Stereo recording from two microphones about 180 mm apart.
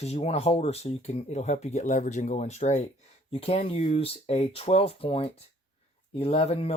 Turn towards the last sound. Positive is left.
turn(degrees=35)  # may be behind; listen again after turning